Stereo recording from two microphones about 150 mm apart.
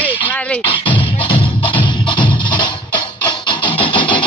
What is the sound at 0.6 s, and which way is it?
Music, 35° left (ahead or behind).